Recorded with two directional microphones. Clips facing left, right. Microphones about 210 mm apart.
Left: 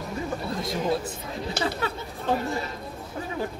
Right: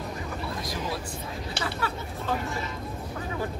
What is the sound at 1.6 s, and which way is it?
Speech, 40° left (ahead or behind).